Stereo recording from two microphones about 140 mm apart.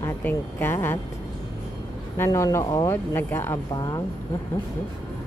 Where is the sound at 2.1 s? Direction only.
20° left (ahead or behind).